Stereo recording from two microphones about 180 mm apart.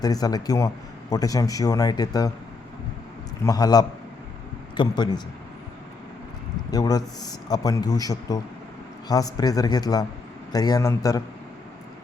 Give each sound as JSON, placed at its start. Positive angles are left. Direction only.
{"t": 0.0, "sound": "a man's voice", "side_deg": 20}
{"t": 3.4, "sound": "a man's voice", "side_deg": 20}
{"t": 6.7, "sound": "a man's voice", "side_deg": 20}